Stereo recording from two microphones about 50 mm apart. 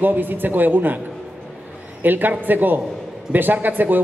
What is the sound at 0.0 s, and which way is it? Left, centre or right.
Speech, right.